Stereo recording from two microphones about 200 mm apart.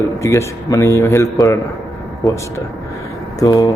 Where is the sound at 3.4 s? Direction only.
20° left (ahead or behind).